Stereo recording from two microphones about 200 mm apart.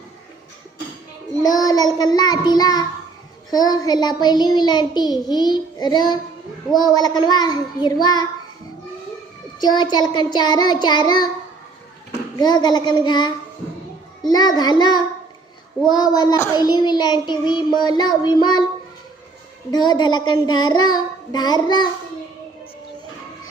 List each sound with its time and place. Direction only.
1.4 s child singing: 20° left (ahead or behind)
9.6 s child singing: 20° left (ahead or behind)
12.4 s child singing: 20° left (ahead or behind)
19.7 s child singing: 20° left (ahead or behind)